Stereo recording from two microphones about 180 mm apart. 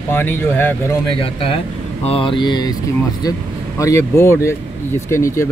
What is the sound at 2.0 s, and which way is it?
Speech, 30° left (ahead or behind).